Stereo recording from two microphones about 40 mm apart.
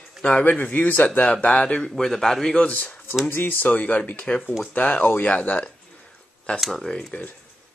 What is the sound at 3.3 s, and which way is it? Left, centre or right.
Speech, left.